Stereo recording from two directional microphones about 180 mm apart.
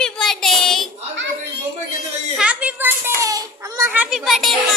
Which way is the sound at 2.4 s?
5° right (ahead or behind).